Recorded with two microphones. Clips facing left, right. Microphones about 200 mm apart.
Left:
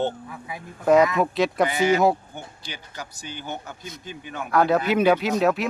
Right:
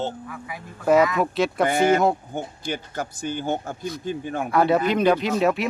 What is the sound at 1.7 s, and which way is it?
Speech, 50° right (ahead or behind).